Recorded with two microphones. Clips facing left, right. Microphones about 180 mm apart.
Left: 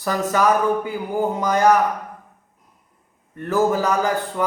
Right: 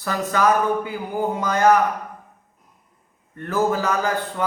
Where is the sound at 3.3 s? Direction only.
15° left (ahead or behind).